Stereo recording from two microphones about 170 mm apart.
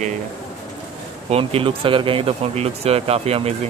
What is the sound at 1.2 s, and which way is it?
Speech, 35° right (ahead or behind).